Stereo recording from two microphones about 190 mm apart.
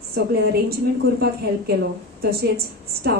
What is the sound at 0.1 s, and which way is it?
Speech, 55° right (ahead or behind).